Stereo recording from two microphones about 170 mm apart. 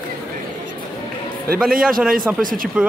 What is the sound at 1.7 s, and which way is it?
A man's voice, 55° right (ahead or behind).